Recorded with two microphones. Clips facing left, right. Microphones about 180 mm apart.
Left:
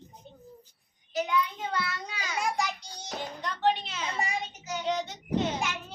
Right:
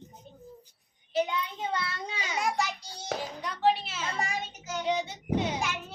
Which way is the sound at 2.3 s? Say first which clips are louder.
Even; centre (ahead or behind).